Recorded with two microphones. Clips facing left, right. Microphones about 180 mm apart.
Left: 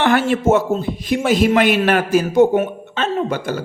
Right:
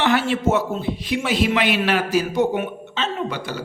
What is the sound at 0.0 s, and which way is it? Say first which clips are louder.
A man's voice: left 4 dB; 50° left (ahead or behind).